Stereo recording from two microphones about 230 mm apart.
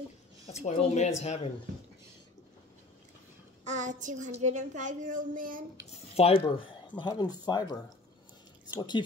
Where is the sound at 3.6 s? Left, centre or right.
Right.